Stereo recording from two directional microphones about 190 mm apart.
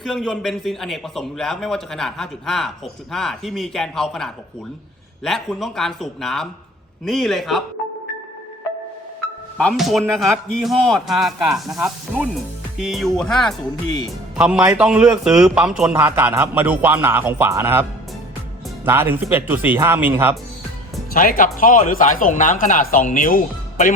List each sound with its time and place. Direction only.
0.0 s a man's voice: centre (ahead or behind)
9.6 s a man's voice: centre (ahead or behind)
18.9 s a man's voice: 10° right (ahead or behind)
21.1 s speech: 45° left (ahead or behind)